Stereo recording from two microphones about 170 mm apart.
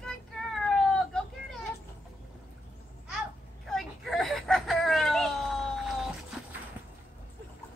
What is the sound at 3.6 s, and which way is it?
Whimper, centre (ahead or behind).